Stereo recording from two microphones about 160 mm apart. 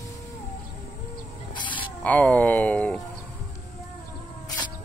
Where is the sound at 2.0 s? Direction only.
10° left (ahead or behind).